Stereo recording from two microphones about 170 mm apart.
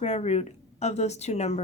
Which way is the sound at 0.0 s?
40° left (ahead or behind).